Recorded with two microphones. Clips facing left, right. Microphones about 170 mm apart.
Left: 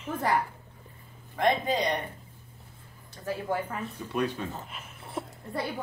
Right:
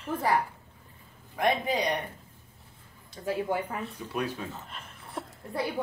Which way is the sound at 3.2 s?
15° right (ahead or behind).